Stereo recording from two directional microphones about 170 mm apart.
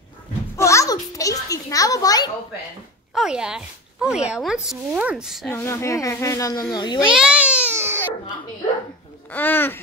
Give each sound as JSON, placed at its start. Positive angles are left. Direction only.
{"t": 0.6, "sound": "a sound", "side_deg": 15}
{"t": 3.2, "sound": "speech", "side_deg": -5}
{"t": 5.5, "sound": "a child's voice", "side_deg": 15}
{"t": 7.1, "sound": "baby cry", "side_deg": -5}
{"t": 9.3, "sound": "speech", "side_deg": 10}